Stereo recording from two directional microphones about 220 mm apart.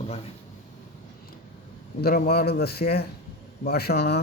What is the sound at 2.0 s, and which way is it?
A man's voice, 45° left (ahead or behind).